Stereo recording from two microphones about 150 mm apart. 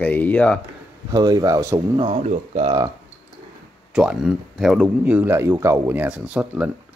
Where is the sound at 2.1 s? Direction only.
45° right (ahead or behind).